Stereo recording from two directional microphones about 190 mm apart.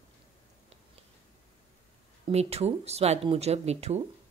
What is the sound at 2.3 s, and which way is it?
Speech, 35° right (ahead or behind).